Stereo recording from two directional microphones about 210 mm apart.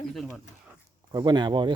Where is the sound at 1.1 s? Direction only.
20° right (ahead or behind).